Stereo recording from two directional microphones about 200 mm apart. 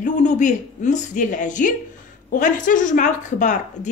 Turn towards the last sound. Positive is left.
turn(degrees=40)  # may be behind; listen again after turning